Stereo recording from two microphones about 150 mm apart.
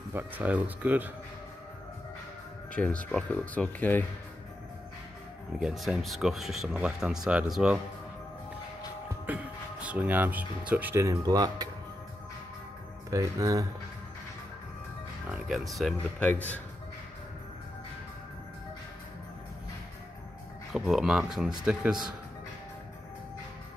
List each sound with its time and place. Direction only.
0.1 s speech: 10° right (ahead or behind)
2.7 s speech: 10° left (ahead or behind)
5.6 s speech: centre (ahead or behind)
9.2 s speech: 10° right (ahead or behind); by 11.7 s 25° right (ahead or behind)
13.1 s speech: 20° right (ahead or behind)
15.5 s speech: centre (ahead or behind)
16.3 s speech: 10° left (ahead or behind)
20.7 s speech: 5° right (ahead or behind)